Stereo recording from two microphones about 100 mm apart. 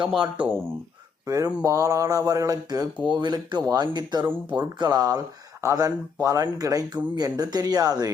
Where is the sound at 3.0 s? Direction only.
45° right (ahead or behind).